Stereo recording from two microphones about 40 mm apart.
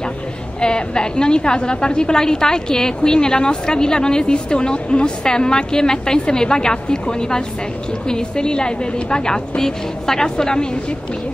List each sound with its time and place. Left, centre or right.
0.6 s a woman's voice: left